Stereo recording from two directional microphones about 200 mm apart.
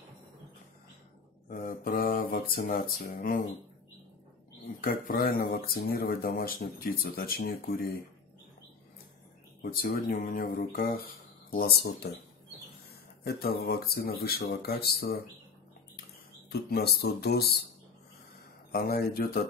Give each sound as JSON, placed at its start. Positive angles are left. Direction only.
{"t": 1.5, "sound": "speech", "side_deg": 45}
{"t": 4.8, "sound": "speech", "side_deg": 45}
{"t": 9.6, "sound": "speech", "side_deg": 45}
{"t": 13.2, "sound": "speech", "side_deg": 50}
{"t": 16.4, "sound": "speech", "side_deg": 50}
{"t": 18.7, "sound": "speech", "side_deg": 50}